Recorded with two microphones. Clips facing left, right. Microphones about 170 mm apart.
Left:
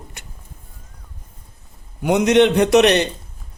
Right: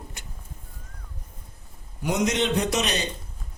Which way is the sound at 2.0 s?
65° left (ahead or behind).